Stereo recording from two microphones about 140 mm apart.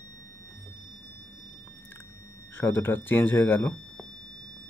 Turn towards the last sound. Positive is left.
turn(degrees=15)  # may be behind; listen again after turning